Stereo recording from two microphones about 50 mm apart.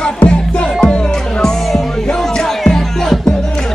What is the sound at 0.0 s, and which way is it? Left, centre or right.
Music, centre.